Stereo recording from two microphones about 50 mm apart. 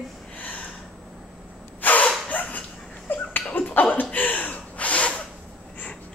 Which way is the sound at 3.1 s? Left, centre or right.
Left.